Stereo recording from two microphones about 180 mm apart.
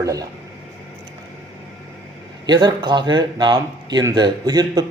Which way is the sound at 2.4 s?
25° right (ahead or behind).